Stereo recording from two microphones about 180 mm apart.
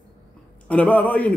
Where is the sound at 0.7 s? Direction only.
10° left (ahead or behind).